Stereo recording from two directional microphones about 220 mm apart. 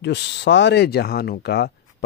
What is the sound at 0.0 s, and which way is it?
Mantra, 50° left (ahead or behind).